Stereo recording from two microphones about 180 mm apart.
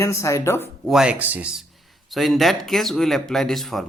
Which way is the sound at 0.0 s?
15° left (ahead or behind).